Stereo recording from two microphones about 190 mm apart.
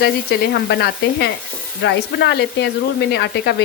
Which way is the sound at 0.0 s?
60° left (ahead or behind).